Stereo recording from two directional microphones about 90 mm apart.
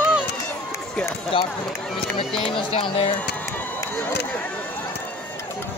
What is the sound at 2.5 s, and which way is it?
Music, 80° left.